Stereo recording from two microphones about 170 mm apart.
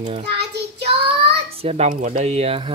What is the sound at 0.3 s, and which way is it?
Child singing, 75° right (ahead or behind).